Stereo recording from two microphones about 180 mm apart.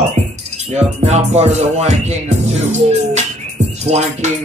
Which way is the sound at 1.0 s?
40° right (ahead or behind).